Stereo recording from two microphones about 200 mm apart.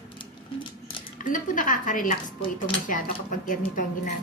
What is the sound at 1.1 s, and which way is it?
Speech, 40° left (ahead or behind).